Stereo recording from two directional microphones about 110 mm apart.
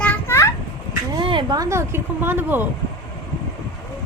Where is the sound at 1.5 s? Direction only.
30° right (ahead or behind).